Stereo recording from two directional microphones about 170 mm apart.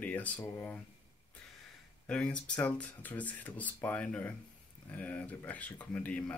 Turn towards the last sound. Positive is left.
turn(degrees=10)  # may be behind; listen again after turning